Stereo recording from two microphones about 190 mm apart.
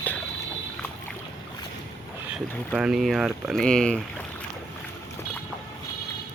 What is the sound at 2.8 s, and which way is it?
Speech, centre (ahead or behind).